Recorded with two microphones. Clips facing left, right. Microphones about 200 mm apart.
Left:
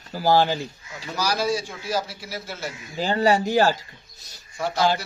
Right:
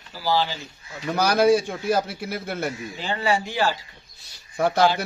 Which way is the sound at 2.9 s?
40° left (ahead or behind).